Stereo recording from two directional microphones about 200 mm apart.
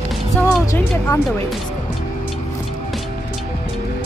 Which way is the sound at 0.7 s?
10° left (ahead or behind).